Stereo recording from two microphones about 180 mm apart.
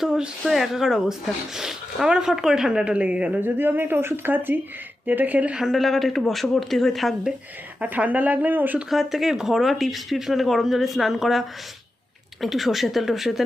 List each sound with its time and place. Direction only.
0.0 s speech: 5° right (ahead or behind)